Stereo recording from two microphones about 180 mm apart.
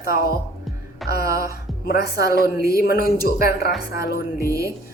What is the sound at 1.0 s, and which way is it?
Music, centre (ahead or behind).